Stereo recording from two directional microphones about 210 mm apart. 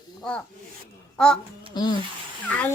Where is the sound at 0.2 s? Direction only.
5° left (ahead or behind).